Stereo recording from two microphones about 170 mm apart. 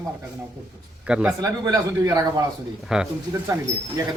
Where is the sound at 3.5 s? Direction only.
20° right (ahead or behind).